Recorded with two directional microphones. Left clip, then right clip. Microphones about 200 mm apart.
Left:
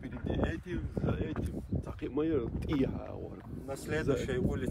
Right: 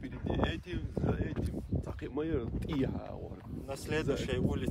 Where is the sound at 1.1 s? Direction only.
45° right (ahead or behind).